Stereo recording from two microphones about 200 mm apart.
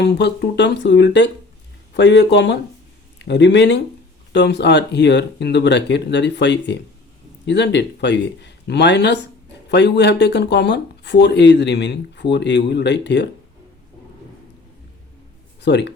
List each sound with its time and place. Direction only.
0.0 s speech: 60° left (ahead or behind)
15.6 s speech: 60° left (ahead or behind)